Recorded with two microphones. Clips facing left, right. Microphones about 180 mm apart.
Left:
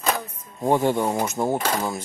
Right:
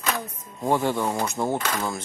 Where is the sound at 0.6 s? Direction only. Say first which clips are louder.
Left 3 dB; 15° left (ahead or behind).